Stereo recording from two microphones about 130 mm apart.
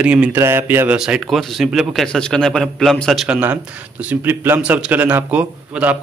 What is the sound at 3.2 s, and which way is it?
Speech, 10° right (ahead or behind).